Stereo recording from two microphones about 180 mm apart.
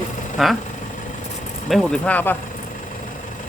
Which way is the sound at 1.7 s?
5° left (ahead or behind).